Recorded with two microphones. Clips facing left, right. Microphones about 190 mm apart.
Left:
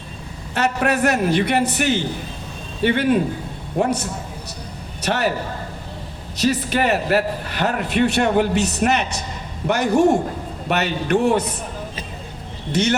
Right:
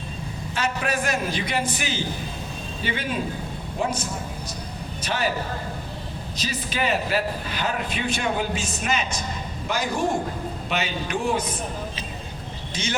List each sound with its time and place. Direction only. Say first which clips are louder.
0.5 s a man's voice: left 7 dB; 65° left (ahead or behind)
6.4 s a man's voice: left 9 dB; 65° left (ahead or behind)
12.7 s a man's voice: left 11 dB; 65° left (ahead or behind)